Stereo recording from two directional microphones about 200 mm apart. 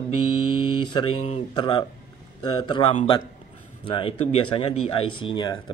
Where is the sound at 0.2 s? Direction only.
90° left.